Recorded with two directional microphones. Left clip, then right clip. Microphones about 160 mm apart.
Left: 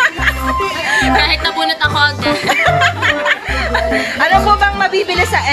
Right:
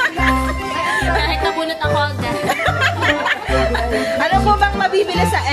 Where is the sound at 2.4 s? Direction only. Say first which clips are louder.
Left 5 dB; 30° left (ahead or behind).